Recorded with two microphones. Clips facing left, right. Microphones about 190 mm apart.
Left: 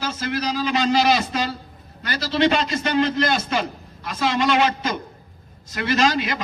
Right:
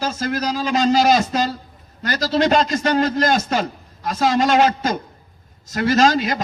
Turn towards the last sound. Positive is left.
turn(degrees=-40)  # may be behind; listen again after turning